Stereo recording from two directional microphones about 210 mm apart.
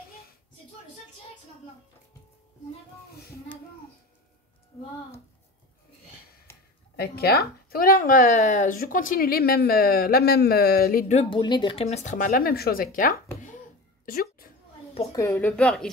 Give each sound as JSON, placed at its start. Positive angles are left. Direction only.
{"t": 7.0, "sound": "speech", "side_deg": 50}
{"t": 14.0, "sound": "a sound", "side_deg": 45}
{"t": 15.1, "sound": "a woman's voice", "side_deg": 10}